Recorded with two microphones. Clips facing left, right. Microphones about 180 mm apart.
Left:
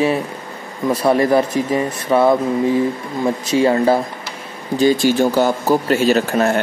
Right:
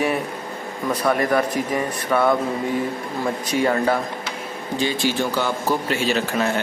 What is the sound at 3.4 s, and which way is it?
Speech, 25° left (ahead or behind).